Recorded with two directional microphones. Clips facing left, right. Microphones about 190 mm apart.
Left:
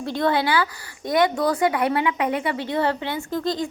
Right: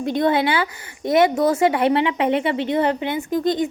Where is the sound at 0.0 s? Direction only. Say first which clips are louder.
Right 3 dB; 20° right (ahead or behind).